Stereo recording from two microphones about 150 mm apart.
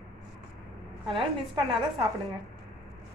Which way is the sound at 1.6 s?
40° right (ahead or behind).